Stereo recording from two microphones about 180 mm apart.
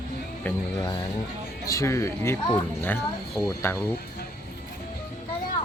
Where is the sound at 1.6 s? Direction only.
15° left (ahead or behind).